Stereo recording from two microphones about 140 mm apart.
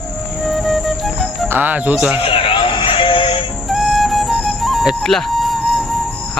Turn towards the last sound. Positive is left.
turn(degrees=0)  # may be behind; listen again after turning